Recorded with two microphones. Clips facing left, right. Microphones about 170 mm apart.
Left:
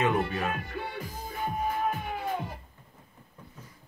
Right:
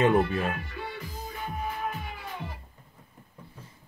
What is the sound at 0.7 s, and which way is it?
Music, 50° left (ahead or behind).